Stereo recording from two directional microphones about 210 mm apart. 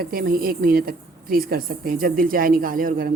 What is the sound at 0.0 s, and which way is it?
A woman's voice, 45° right (ahead or behind).